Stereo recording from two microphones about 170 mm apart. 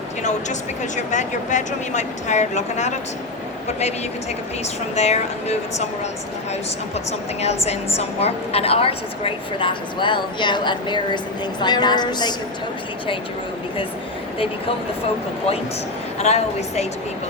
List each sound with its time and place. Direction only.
0.9 s speech: 45° left (ahead or behind)
4.9 s speech: 40° left (ahead or behind)
7.4 s a woman's voice: 40° left (ahead or behind)
16.1 s speech: 40° left (ahead or behind)